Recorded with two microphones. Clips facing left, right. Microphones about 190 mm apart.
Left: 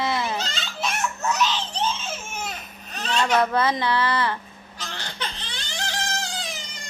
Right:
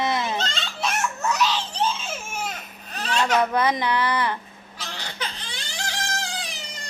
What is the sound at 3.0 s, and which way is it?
A child's voice, 5° right (ahead or behind).